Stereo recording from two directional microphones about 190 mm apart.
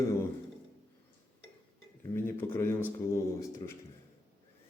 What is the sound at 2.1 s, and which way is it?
Speech, 10° left (ahead or behind).